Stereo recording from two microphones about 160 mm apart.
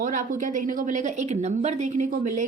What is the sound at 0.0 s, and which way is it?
A woman's voice, 55° right (ahead or behind).